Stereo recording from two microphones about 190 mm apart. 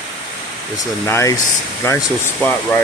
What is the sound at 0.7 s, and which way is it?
Speech, 15° left (ahead or behind).